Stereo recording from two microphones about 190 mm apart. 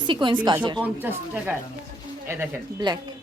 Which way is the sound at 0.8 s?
10° right (ahead or behind).